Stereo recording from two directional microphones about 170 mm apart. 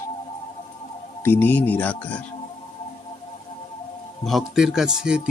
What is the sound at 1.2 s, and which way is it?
Speech, 10° left (ahead or behind).